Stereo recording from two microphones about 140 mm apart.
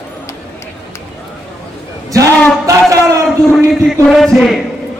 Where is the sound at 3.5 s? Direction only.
Centre (ahead or behind).